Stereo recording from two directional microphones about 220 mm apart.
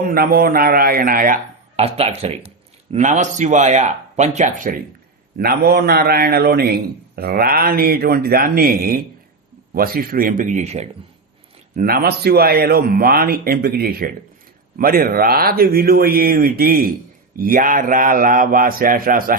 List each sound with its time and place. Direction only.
0.0 s speech: 45° right (ahead or behind)
1.7 s a man's voice: 30° right (ahead or behind)
5.4 s a man's voice: 45° right (ahead or behind)